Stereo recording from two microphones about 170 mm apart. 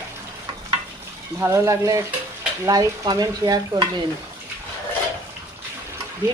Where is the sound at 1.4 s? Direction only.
15° right (ahead or behind).